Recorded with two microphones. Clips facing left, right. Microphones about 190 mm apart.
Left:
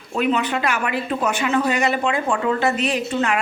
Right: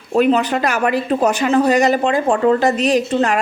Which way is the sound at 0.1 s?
40° right (ahead or behind).